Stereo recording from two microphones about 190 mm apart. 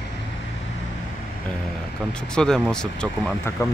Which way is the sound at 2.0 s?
5° left (ahead or behind).